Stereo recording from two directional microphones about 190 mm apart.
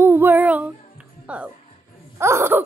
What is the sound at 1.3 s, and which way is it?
Music, 5° right (ahead or behind).